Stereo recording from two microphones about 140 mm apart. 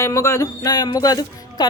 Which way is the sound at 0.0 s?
20° left (ahead or behind).